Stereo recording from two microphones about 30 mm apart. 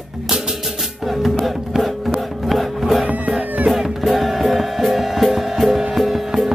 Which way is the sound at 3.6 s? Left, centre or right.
Centre.